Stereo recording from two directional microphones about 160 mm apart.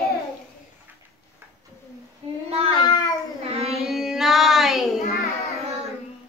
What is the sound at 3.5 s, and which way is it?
Carnatic music, 40° right (ahead or behind).